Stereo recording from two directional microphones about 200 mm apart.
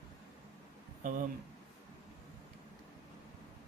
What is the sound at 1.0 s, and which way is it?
Speech, 40° right (ahead or behind).